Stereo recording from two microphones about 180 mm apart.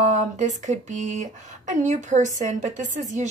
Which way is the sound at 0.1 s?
40° right (ahead or behind).